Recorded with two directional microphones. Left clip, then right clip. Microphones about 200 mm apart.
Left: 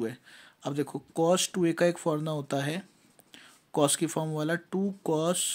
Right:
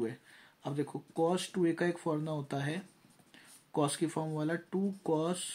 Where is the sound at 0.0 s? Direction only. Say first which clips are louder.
Left 3 dB; 35° left (ahead or behind).